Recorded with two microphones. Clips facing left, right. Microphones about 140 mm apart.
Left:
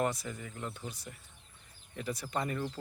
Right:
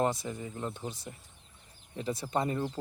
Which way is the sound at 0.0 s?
25° right (ahead or behind).